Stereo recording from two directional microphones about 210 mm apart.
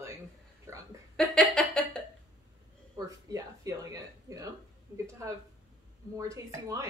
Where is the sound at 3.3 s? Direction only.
15° right (ahead or behind).